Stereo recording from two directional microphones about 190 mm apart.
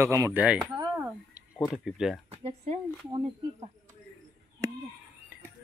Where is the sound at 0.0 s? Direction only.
15° right (ahead or behind).